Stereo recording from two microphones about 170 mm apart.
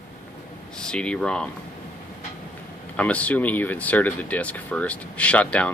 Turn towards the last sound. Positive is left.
turn(degrees=5)  # may be behind; listen again after turning